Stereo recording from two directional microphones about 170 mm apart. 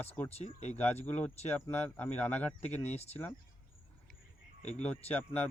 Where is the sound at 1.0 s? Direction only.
10° left (ahead or behind).